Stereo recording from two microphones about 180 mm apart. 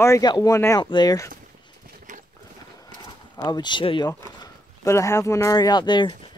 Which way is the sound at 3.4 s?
25° left (ahead or behind).